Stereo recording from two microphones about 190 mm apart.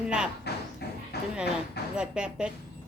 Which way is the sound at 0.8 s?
60° left (ahead or behind).